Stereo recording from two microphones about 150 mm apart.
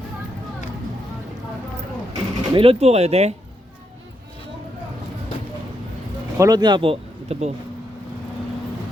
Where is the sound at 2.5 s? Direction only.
40° right (ahead or behind).